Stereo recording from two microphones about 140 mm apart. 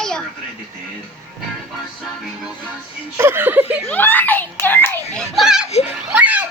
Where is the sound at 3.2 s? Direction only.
15° right (ahead or behind).